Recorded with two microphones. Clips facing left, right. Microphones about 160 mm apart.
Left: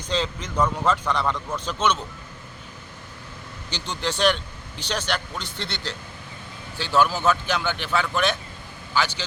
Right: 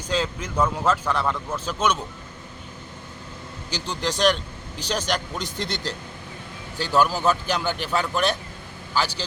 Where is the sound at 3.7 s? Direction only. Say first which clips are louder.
Right 1 dB; 5° right (ahead or behind).